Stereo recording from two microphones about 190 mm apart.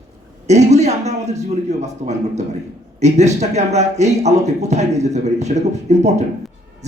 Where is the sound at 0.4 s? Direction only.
35° right (ahead or behind).